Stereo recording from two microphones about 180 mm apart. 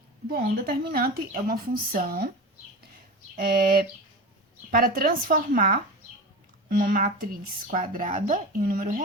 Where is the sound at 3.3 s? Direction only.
60° right (ahead or behind).